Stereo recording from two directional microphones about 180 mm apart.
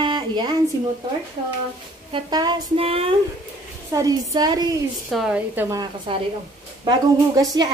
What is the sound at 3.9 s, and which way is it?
Speech, 20° right (ahead or behind).